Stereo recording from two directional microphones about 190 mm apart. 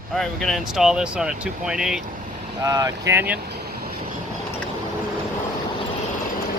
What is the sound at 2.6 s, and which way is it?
Speech, 20° right (ahead or behind).